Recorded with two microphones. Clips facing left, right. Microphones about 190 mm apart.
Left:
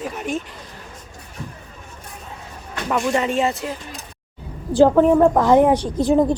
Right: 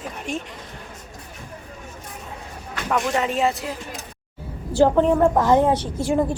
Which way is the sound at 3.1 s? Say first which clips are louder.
Left 2 dB; centre (ahead or behind).